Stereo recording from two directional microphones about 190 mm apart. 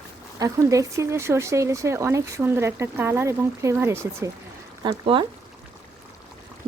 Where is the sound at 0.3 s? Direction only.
15° right (ahead or behind).